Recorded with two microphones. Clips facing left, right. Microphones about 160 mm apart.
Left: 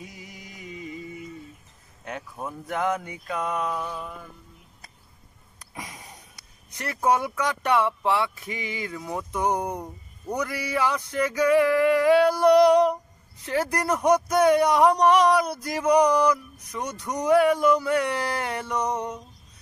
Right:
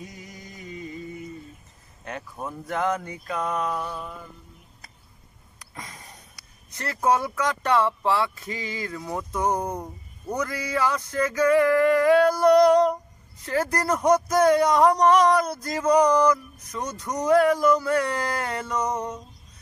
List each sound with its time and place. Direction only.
0.0 s music: 5° left (ahead or behind)
2.0 s speech: 5° left (ahead or behind)
5.8 s a sound: 15° left (ahead or behind)
6.7 s speech: 15° left (ahead or behind)
10.3 s male singing: 15° left (ahead or behind)
13.4 s speech: 15° left (ahead or behind)